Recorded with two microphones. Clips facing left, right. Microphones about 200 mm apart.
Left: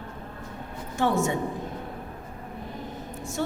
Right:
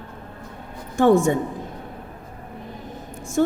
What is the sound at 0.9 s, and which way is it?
Speech, 50° right (ahead or behind).